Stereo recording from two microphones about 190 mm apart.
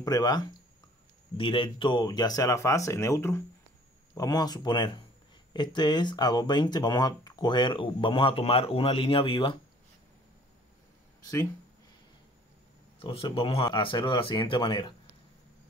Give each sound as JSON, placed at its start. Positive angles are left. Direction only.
{"t": 0.0, "sound": "speech", "side_deg": 20}
{"t": 13.0, "sound": "speech", "side_deg": 30}